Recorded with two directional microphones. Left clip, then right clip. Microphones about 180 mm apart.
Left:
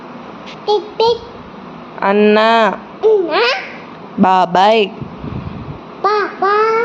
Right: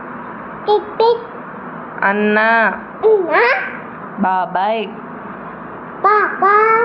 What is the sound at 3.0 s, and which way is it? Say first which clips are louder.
Babbling: even; 20° left (ahead or behind).